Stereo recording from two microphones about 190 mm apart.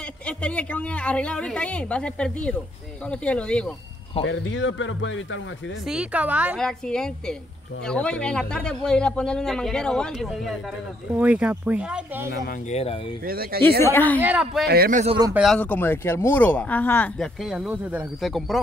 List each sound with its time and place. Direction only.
0.3 s speech: 5° left (ahead or behind)
4.2 s speech: 85° left
5.9 s speech: 5° right (ahead or behind)
12.6 s speech: 30° left (ahead or behind)
13.2 s a man's voice: 50° right (ahead or behind)
13.8 s speech: 10° left (ahead or behind)
14.2 s speech: 5° right (ahead or behind)
14.7 s a man's voice: 50° right (ahead or behind)
15.3 s speech: centre (ahead or behind)